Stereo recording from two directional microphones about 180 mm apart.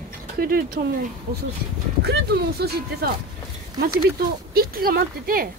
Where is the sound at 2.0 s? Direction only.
60° right (ahead or behind).